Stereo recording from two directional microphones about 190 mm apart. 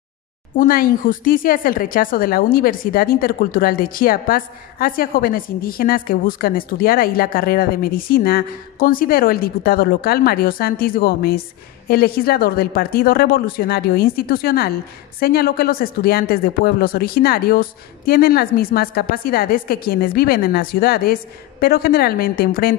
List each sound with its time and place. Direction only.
0.6 s a woman's voice: 50° left (ahead or behind)